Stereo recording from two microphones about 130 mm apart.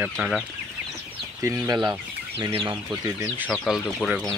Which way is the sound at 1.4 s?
25° right (ahead or behind).